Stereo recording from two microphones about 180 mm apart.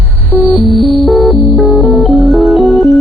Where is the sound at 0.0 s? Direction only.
Centre (ahead or behind).